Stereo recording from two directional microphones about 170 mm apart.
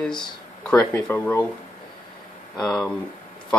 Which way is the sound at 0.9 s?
10° left (ahead or behind).